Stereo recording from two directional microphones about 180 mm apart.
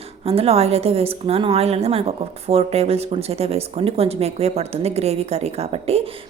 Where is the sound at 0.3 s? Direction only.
35° right (ahead or behind).